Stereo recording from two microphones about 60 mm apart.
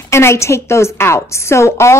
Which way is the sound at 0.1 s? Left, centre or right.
Left.